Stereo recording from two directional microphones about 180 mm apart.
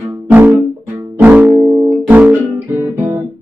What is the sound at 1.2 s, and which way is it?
Music, 10° right (ahead or behind).